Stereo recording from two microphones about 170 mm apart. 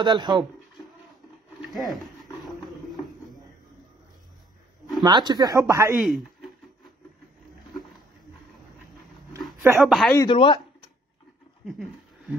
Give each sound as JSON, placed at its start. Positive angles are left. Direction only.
{"t": 0.0, "sound": "speech", "side_deg": -25}
{"t": 1.7, "sound": "speech", "side_deg": 0}
{"t": 5.0, "sound": "speech", "side_deg": -25}
{"t": 5.9, "sound": "speech", "side_deg": -5}
{"t": 9.8, "sound": "speech", "side_deg": 0}
{"t": 10.1, "sound": "speech", "side_deg": 30}
{"t": 11.6, "sound": "a sound", "side_deg": 0}